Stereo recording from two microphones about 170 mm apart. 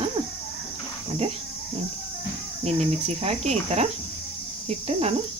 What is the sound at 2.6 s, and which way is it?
Speech, 40° right (ahead or behind).